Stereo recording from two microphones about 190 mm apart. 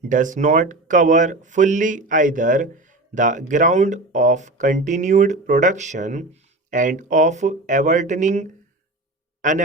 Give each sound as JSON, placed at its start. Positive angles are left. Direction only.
{"t": 0.1, "sound": "speech", "side_deg": -45}